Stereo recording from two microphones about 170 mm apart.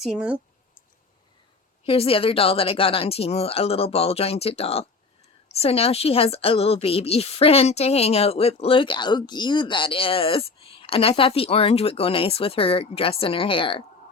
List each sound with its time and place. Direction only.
0.0 s speech: 5° right (ahead or behind)
1.8 s a woman's voice: 35° left (ahead or behind)